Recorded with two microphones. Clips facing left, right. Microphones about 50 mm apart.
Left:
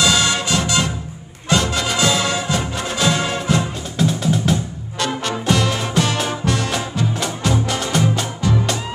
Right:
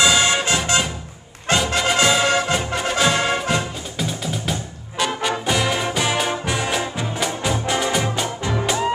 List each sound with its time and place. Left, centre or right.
0.0 s music: right
3.5 s music: centre